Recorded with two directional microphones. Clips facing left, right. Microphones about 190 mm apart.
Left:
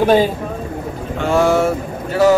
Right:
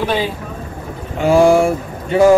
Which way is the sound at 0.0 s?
45° left (ahead or behind).